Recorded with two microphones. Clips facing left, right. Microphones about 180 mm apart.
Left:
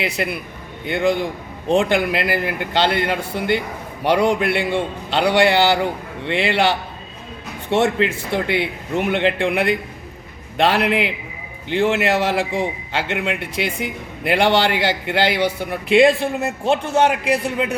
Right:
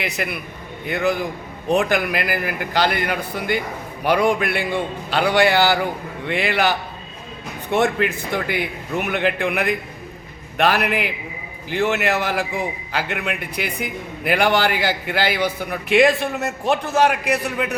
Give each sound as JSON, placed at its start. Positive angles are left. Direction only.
{"t": 0.0, "sound": "a man's voice", "side_deg": 30}
{"t": 14.3, "sound": "a man's voice", "side_deg": 25}